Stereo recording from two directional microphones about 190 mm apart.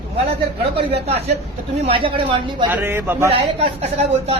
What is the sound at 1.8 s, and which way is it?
Speech, 30° right (ahead or behind).